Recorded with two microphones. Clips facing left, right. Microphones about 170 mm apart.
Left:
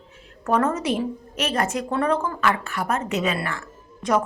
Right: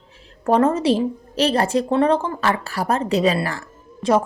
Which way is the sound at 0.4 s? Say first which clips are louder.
Right 5 dB; 30° right (ahead or behind).